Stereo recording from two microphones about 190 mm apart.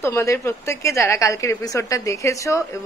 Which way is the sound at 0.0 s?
15° left (ahead or behind).